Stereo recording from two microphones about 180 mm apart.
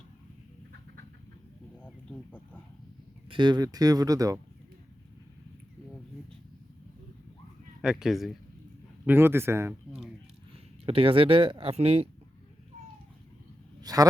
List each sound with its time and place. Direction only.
1.8 s a sound: 10° left (ahead or behind)
3.2 s speech: 25° right (ahead or behind)
7.8 s speech: 5° right (ahead or behind)
9.0 s speech: 10° right (ahead or behind)
10.8 s speech: 30° right (ahead or behind)
13.8 s a sound: 20° right (ahead or behind)